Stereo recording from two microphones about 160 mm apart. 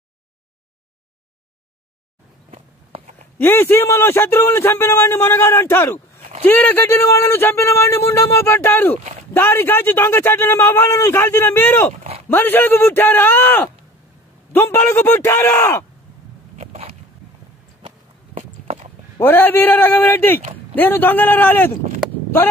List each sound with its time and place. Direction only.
2.5 s walk: 45° right (ahead or behind)
3.3 s a man's voice: 15° left (ahead or behind)
11.9 s speech: 50° right (ahead or behind)
12.3 s a man's voice: 15° left (ahead or behind)
16.5 s a sound: 40° right (ahead or behind)
18.3 s walk: 45° right (ahead or behind)
19.1 s a man's voice: 10° left (ahead or behind)